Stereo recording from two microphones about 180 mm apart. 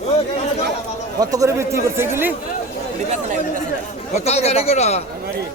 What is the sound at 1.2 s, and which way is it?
Speech, 20° right (ahead or behind).